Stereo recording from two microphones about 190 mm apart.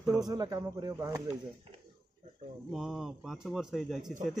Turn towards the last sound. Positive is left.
turn(degrees=0)  # may be behind; listen again after turning